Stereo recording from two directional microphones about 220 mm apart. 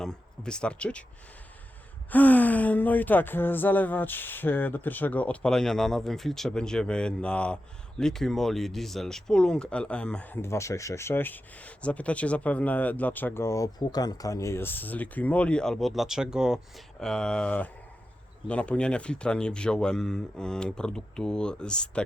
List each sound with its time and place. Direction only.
0.0 s speech: 5° left (ahead or behind)
2.0 s speech: 5° left (ahead or behind)